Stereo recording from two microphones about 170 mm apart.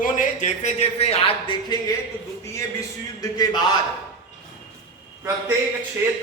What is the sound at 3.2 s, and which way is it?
Speech, 20° left (ahead or behind).